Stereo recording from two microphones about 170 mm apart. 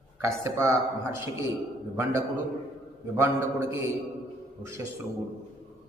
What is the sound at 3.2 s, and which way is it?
Speech, 15° right (ahead or behind).